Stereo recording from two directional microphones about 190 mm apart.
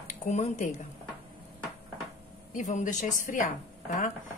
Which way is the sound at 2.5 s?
40° left (ahead or behind).